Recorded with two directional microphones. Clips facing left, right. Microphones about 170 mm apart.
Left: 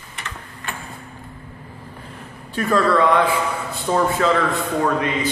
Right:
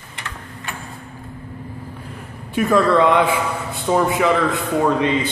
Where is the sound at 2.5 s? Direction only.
15° right (ahead or behind).